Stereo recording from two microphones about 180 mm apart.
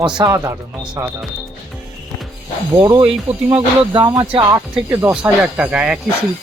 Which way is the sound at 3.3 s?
35° right (ahead or behind).